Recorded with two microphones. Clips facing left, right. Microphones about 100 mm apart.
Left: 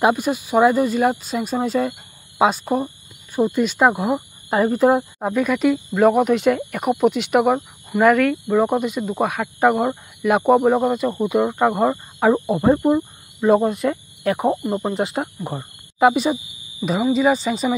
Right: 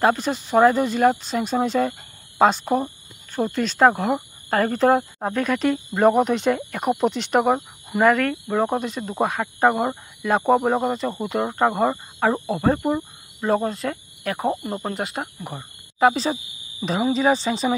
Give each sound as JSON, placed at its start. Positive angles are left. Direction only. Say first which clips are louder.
{"t": 0.0, "sound": "speech", "louder": "left 2 dB", "side_deg": 10}
{"t": 12.4, "sound": "speech", "louder": "left 4 dB", "side_deg": 20}
{"t": 13.7, "sound": "cricket", "louder": "left 6 dB", "side_deg": 20}
{"t": 16.0, "sound": "speech", "louder": "left 3 dB", "side_deg": 15}